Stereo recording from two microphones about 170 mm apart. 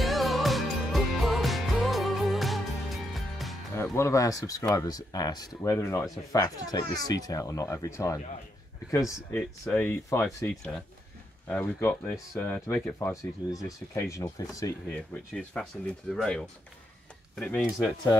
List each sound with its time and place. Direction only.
0.0 s music: centre (ahead or behind)
3.7 s speech: 15° left (ahead or behind)
11.4 s speech: 10° left (ahead or behind)
13.1 s speech: 20° left (ahead or behind)
15.3 s speech: 5° left (ahead or behind)